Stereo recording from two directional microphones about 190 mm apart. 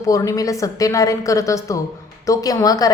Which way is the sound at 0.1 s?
20° left (ahead or behind).